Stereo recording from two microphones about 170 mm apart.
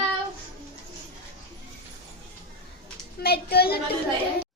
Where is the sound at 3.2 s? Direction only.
70° left (ahead or behind).